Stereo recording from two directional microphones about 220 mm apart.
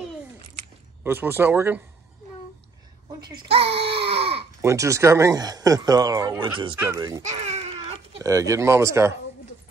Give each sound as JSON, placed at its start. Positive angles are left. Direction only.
{"t": 1.0, "sound": "speech", "side_deg": -10}
{"t": 3.2, "sound": "a child's voice", "side_deg": -20}
{"t": 3.8, "sound": "baby cry", "side_deg": -25}
{"t": 4.6, "sound": "speech", "side_deg": -15}
{"t": 7.2, "sound": "baby cry", "side_deg": -30}
{"t": 8.2, "sound": "speech", "side_deg": -15}